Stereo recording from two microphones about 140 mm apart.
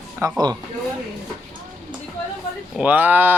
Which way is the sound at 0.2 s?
20° right (ahead or behind).